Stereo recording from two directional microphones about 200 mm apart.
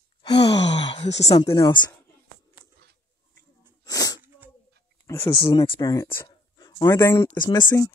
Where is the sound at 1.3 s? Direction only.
20° left (ahead or behind).